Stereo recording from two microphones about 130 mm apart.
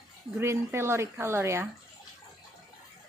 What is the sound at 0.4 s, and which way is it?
A woman's voice, 20° right (ahead or behind).